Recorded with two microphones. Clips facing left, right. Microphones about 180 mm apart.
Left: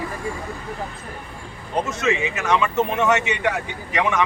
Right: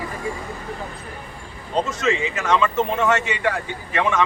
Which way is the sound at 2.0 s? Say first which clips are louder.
Even; 15° left (ahead or behind).